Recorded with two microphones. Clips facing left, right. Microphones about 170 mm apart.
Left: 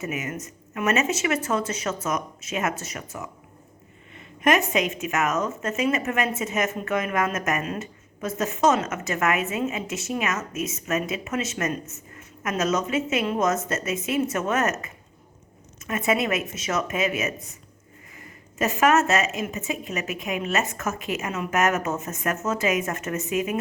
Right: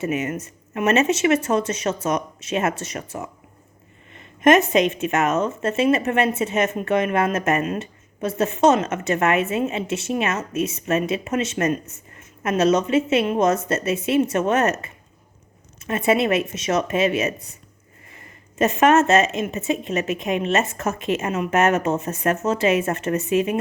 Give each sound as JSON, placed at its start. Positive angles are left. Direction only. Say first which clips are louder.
{"t": 0.0, "sound": "a woman's voice", "louder": "right 6 dB", "side_deg": -30}
{"t": 4.7, "sound": "a woman's voice", "louder": "right 6 dB", "side_deg": -30}
{"t": 17.3, "sound": "speech", "louder": "left 1 dB", "side_deg": 20}
{"t": 18.6, "sound": "a woman's voice", "louder": "right 4 dB", "side_deg": -30}